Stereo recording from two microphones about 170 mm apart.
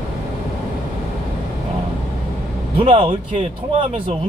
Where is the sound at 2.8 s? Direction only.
30° right (ahead or behind).